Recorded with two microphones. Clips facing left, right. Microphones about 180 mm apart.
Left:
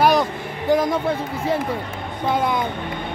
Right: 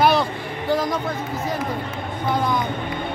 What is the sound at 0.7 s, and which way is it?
Speech, 25° left (ahead or behind).